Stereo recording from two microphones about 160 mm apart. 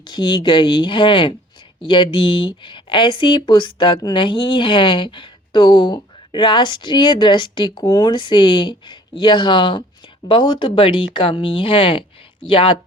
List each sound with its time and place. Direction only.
0.1 s speech: 30° left (ahead or behind)